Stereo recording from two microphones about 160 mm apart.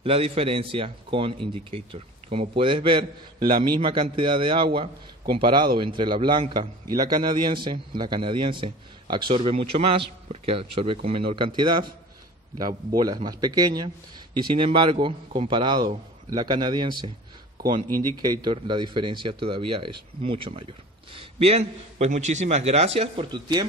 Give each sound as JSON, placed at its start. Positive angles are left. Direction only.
{"t": 0.0, "sound": "a man's voice", "side_deg": -35}
{"t": 13.0, "sound": "speech", "side_deg": -25}
{"t": 18.4, "sound": "a man's voice", "side_deg": -30}